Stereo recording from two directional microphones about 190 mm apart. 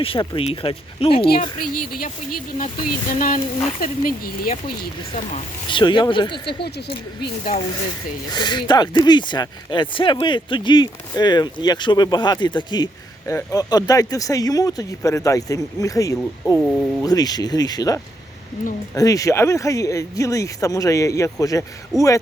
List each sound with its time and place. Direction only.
0.0 s speech: 30° left (ahead or behind)
1.2 s speech: 50° left (ahead or behind)
3.2 s speech: 45° left (ahead or behind)
5.7 s speech: 25° left (ahead or behind)
6.4 s speech: 60° left (ahead or behind)
8.3 s speech: 25° left (ahead or behind)